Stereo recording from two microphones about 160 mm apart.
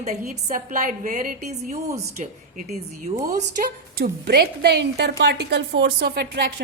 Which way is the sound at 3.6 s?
75° right (ahead or behind).